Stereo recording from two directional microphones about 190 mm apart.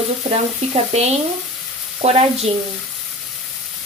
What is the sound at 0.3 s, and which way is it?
Speech, 35° right (ahead or behind).